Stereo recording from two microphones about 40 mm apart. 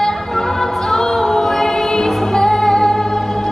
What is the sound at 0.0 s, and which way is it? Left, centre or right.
Music, centre.